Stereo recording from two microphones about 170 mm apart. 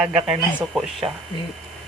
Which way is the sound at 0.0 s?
5° right (ahead or behind).